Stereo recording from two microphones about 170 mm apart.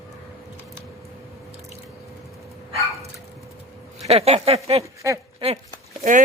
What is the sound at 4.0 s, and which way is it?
Speech, 40° right (ahead or behind).